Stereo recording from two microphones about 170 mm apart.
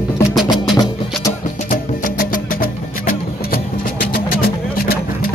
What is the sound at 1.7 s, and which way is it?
Music, 55° left (ahead or behind).